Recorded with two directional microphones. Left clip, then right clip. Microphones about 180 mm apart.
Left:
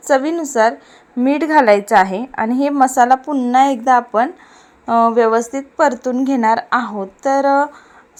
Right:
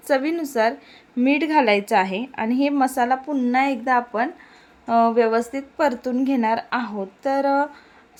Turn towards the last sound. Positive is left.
turn(degrees=20)  # may be behind; listen again after turning